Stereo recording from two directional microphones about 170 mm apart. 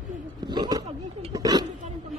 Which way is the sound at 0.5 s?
25° right (ahead or behind).